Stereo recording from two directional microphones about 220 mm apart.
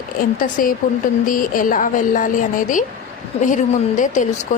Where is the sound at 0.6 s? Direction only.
40° left (ahead or behind).